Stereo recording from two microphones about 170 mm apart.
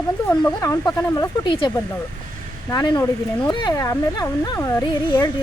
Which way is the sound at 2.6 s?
25° left (ahead or behind).